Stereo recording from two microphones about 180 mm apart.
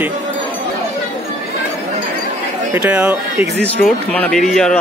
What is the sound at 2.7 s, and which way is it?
Speech, 10° right (ahead or behind).